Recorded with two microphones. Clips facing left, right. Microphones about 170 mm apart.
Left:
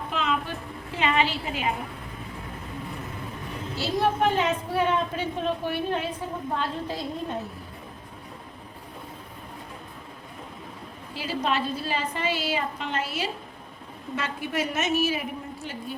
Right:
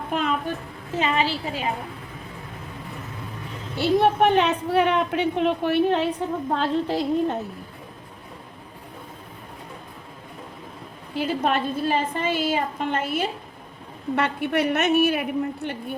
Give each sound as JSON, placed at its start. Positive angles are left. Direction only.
{"t": 0.1, "sound": "music", "side_deg": -50}
{"t": 0.9, "sound": "a woman's voice", "side_deg": -40}
{"t": 3.8, "sound": "a woman's voice", "side_deg": -65}
{"t": 11.1, "sound": "a woman's voice", "side_deg": -55}